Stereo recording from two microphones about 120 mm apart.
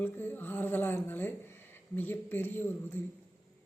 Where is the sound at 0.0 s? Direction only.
15° left (ahead or behind).